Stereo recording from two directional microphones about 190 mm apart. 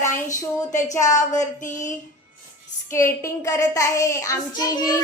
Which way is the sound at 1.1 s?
40° left (ahead or behind).